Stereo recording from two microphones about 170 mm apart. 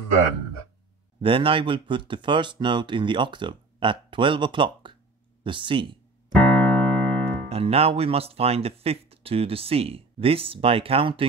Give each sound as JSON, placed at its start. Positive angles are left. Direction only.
{"t": 1.2, "sound": "speech", "side_deg": -30}
{"t": 6.3, "sound": "keyboard", "side_deg": 5}
{"t": 7.4, "sound": "speech", "side_deg": -35}